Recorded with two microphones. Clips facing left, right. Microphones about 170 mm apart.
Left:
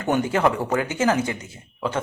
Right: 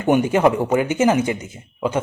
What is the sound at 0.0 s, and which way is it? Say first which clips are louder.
Speech: right 5 dB; 15° right (ahead or behind).